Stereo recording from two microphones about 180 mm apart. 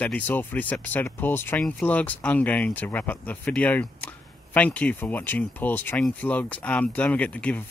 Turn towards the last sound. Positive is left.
turn(degrees=5)  # may be behind; listen again after turning